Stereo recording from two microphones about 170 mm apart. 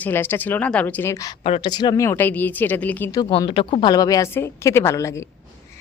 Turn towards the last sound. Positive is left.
turn(degrees=15)  # may be behind; listen again after turning